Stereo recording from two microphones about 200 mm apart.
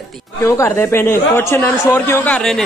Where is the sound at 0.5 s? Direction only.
15° left (ahead or behind).